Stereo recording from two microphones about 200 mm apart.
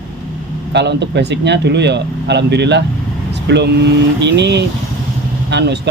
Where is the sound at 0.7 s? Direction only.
60° right (ahead or behind).